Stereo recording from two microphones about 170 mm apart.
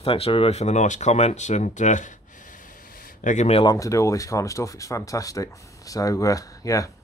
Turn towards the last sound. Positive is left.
turn(degrees=20)  # may be behind; listen again after turning